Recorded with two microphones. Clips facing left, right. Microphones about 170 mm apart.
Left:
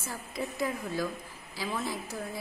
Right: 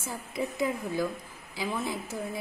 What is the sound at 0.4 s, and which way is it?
A woman's voice, 15° right (ahead or behind).